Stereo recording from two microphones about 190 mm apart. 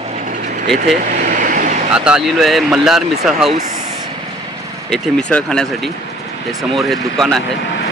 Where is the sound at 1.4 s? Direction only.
45° right (ahead or behind).